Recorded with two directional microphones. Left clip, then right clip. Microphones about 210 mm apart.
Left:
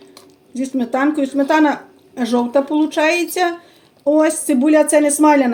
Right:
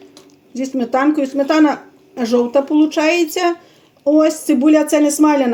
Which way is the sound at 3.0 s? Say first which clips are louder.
Even; 25° right (ahead or behind).